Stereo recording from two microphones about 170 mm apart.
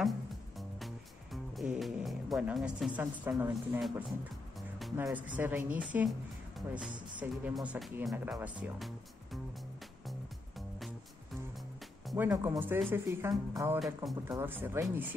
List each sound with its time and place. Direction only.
0.0 s music: centre (ahead or behind)
3.0 s speech: 15° right (ahead or behind)
4.6 s music: centre (ahead or behind)
4.9 s speech: 10° right (ahead or behind)
7.2 s speech: 10° right (ahead or behind)
12.2 s speech: 10° right (ahead or behind)
13.7 s speech: centre (ahead or behind)
14.2 s speech: 15° right (ahead or behind)